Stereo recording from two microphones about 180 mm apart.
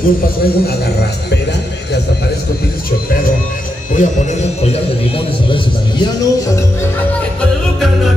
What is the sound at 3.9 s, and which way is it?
A man's voice, 40° left (ahead or behind).